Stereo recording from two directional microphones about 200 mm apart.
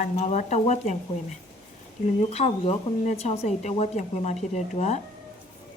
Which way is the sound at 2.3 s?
30° left (ahead or behind).